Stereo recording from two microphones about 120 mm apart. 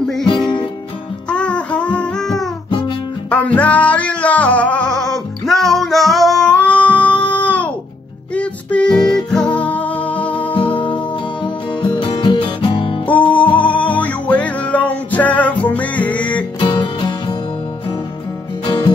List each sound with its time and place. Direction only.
0.2 s music: 40° left (ahead or behind)
1.3 s music: 10° left (ahead or behind)
10.7 s music: 40° left (ahead or behind)
13.7 s music: 15° left (ahead or behind)
16.5 s music: 45° left (ahead or behind)